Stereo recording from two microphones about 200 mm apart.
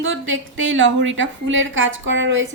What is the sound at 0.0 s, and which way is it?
A woman's voice, 70° right (ahead or behind).